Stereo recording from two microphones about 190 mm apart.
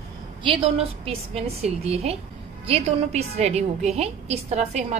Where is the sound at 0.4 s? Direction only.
30° right (ahead or behind).